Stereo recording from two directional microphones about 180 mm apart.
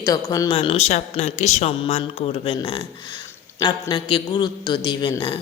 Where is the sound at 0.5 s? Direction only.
30° left (ahead or behind).